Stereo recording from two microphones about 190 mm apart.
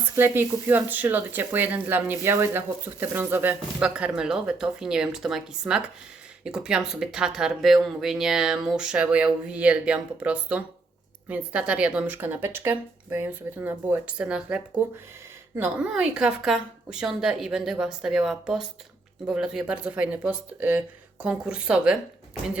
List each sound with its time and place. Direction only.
0.2 s speech: 10° right (ahead or behind)